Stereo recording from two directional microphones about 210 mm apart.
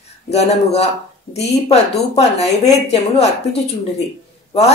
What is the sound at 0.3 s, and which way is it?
Speech, 30° left (ahead or behind).